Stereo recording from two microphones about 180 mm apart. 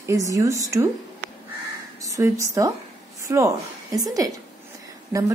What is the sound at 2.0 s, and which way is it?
A woman's voice, 15° right (ahead or behind).